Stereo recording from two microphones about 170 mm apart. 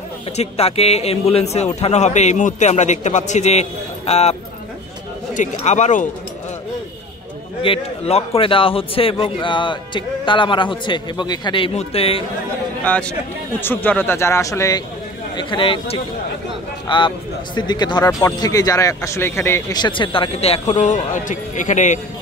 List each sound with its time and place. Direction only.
0.4 s a man's voice: 35° left (ahead or behind)
7.6 s a man's voice: 35° left (ahead or behind)
12.8 s a man's voice: 10° left (ahead or behind)
15.3 s a man's voice: 30° left (ahead or behind); by 22.0 s 45° left (ahead or behind)